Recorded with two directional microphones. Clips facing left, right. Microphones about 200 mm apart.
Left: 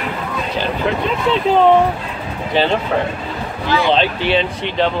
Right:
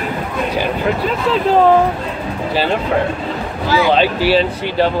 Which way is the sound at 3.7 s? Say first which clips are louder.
Right 2 dB; 5° right (ahead or behind).